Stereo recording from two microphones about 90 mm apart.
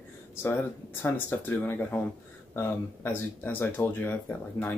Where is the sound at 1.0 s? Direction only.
20° left (ahead or behind).